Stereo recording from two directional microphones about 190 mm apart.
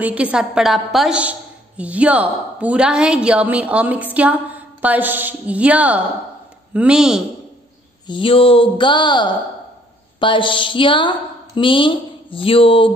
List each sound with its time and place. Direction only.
0.0 s a woman's voice: 5° right (ahead or behind)
8.1 s a woman's voice: 30° left (ahead or behind)